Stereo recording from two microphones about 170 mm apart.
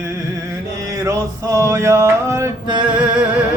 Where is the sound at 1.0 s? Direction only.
15° right (ahead or behind).